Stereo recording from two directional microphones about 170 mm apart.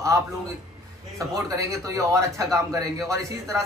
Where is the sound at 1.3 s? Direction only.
20° right (ahead or behind).